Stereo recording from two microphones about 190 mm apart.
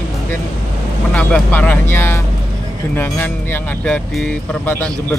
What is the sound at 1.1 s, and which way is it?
Speech, 10° left (ahead or behind).